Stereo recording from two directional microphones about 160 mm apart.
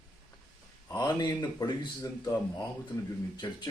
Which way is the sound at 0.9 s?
25° left (ahead or behind).